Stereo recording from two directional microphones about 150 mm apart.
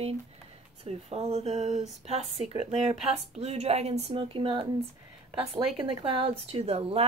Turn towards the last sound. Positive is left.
turn(degrees=-45)  # may be behind; listen again after turning